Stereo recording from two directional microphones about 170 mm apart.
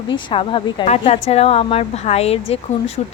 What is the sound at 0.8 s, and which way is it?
A woman's voice, 40° left (ahead or behind).